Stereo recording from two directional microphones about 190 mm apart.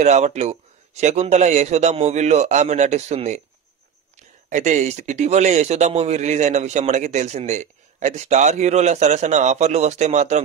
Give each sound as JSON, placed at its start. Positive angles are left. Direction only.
{"t": 0.0, "sound": "speech", "side_deg": -35}